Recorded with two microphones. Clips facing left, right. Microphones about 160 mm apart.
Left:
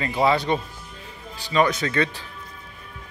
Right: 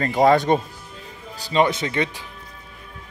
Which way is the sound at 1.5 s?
25° right (ahead or behind).